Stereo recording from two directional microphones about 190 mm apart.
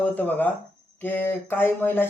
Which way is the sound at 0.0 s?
10° left (ahead or behind).